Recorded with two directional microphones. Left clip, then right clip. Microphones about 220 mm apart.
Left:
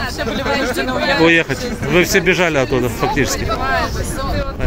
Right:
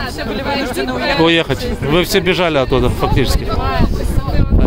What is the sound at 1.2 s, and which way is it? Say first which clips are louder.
Speech: right 1 dB; 20° right (ahead or behind).